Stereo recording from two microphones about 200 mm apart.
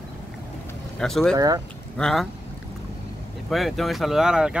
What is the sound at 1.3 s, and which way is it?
Speech, 15° right (ahead or behind).